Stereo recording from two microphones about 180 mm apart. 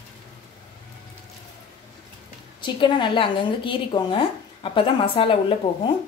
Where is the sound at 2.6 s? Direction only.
25° left (ahead or behind).